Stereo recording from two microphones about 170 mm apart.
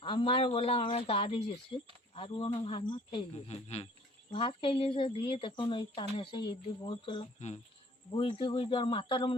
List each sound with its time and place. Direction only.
0.0 s speech: 30° left (ahead or behind)
8.1 s speech: 30° left (ahead or behind)